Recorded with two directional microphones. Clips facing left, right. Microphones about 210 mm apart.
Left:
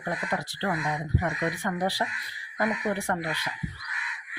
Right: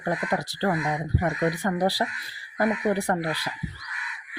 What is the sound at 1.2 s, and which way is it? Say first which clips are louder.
Speech: right 7 dB; 35° right (ahead or behind).